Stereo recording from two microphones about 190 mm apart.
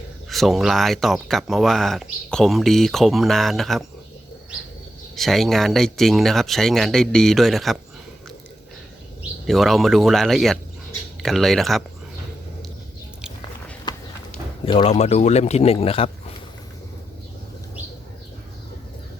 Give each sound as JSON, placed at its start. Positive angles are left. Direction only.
{"t": 0.3, "sound": "speech", "side_deg": 0}
{"t": 5.1, "sound": "speech", "side_deg": 0}
{"t": 9.5, "sound": "speech", "side_deg": 0}
{"t": 13.9, "sound": "clip-clop", "side_deg": 20}
{"t": 14.6, "sound": "a man's voice", "side_deg": 25}